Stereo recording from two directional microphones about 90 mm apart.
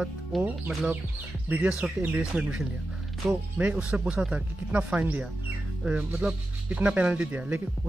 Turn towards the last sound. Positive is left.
turn(degrees=-15)  # may be behind; listen again after turning